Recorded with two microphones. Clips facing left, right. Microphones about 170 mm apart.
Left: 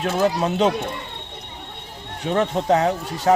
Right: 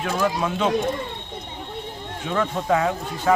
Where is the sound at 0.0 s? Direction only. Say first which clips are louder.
Left 3 dB; 40° left (ahead or behind).